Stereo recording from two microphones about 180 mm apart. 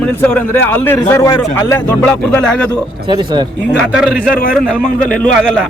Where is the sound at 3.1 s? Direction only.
25° right (ahead or behind).